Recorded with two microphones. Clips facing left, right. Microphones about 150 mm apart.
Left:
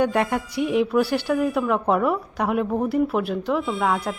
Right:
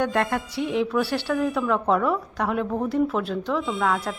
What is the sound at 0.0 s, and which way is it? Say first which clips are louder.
Speech: left 2 dB; 15° left (ahead or behind).